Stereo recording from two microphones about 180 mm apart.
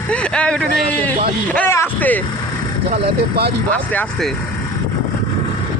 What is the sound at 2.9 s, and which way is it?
Speech, 60° right (ahead or behind).